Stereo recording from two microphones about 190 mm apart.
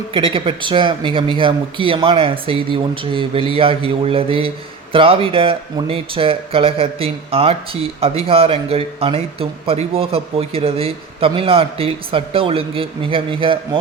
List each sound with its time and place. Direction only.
0.1 s speech: 30° right (ahead or behind)